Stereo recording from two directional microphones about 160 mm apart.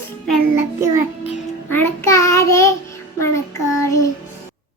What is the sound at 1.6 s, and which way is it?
Child singing, 15° left (ahead or behind).